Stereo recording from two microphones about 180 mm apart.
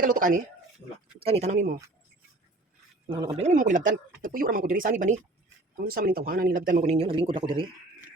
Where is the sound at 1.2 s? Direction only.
35° right (ahead or behind).